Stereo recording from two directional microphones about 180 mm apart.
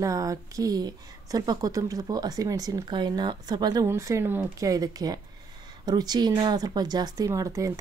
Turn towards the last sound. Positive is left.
turn(degrees=-20)  # may be behind; listen again after turning